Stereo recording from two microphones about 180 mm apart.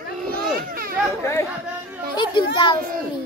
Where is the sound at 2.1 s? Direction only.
25° left (ahead or behind).